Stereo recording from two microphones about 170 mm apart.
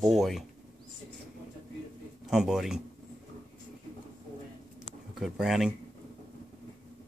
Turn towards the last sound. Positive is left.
turn(degrees=-5)  # may be behind; listen again after turning